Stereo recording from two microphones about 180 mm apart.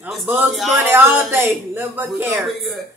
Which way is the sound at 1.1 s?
10° right (ahead or behind).